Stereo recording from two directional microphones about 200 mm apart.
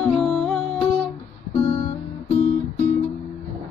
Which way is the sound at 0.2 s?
Centre (ahead or behind).